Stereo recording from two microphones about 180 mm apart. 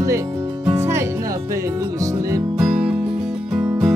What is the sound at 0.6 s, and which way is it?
Music, 15° right (ahead or behind).